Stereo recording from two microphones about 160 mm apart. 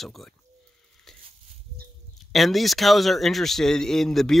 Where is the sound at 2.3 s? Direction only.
Centre (ahead or behind).